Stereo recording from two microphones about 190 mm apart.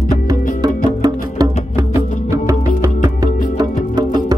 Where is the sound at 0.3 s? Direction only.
20° right (ahead or behind).